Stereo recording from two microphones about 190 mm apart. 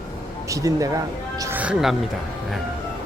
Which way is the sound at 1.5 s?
5° right (ahead or behind).